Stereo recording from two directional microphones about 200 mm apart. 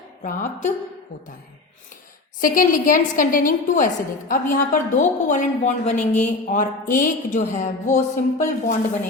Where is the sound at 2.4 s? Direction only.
45° left (ahead or behind).